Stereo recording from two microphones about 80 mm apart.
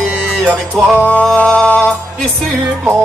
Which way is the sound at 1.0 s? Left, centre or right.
Centre.